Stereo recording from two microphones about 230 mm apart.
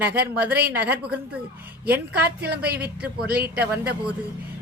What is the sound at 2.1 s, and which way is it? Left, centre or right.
Speech, right.